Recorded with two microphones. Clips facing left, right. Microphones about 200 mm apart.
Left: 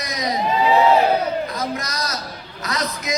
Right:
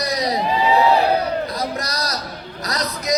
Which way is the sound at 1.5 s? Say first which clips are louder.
Right 1 dB; 35° right (ahead or behind).